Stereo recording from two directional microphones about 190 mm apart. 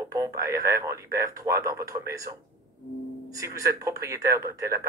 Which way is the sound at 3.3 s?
15° right (ahead or behind).